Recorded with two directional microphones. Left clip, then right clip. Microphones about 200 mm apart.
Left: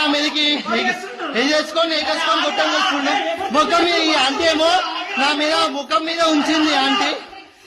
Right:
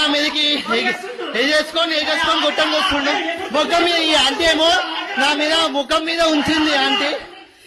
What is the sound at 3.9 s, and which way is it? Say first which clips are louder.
A man's voice: right 1 dB; centre (ahead or behind).